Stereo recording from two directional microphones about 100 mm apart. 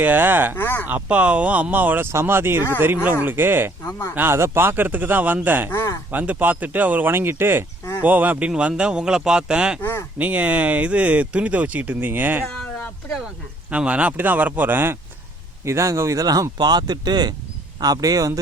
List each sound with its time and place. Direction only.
0.0 s speech: 20° right (ahead or behind)
0.5 s speech: 20° left (ahead or behind)
0.9 s speech: 15° right (ahead or behind)
3.8 s speech: 20° left (ahead or behind)
4.1 s speech: 20° right (ahead or behind)
5.7 s speech: 30° left (ahead or behind)
6.1 s speech: 20° right (ahead or behind)
9.8 s speech: 25° left (ahead or behind)
10.2 s speech: 15° right (ahead or behind)
13.7 s speech: 10° right (ahead or behind); by 18.3 s 35° right (ahead or behind)